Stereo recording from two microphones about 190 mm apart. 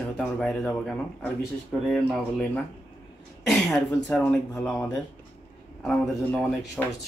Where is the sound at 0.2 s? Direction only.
5° left (ahead or behind).